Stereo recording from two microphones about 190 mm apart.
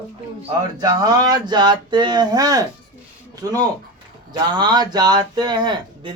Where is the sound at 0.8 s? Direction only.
20° right (ahead or behind).